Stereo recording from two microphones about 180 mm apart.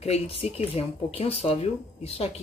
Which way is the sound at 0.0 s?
35° left (ahead or behind).